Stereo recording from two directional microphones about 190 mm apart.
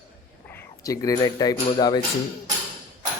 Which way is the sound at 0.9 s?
20° left (ahead or behind).